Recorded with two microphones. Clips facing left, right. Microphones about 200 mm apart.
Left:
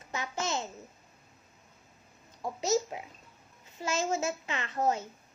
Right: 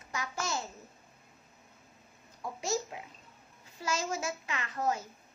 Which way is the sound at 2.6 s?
20° left (ahead or behind).